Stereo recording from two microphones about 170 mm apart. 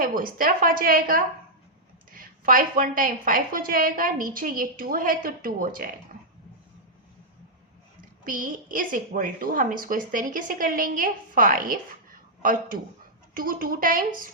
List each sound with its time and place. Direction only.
0.0 s a woman's voice: 55° right (ahead or behind)
8.2 s a woman's voice: 55° right (ahead or behind)